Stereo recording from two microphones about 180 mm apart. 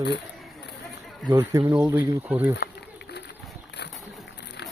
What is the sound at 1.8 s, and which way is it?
Speech, 10° right (ahead or behind).